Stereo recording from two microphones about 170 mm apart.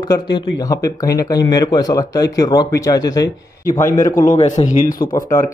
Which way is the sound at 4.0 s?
50° left (ahead or behind).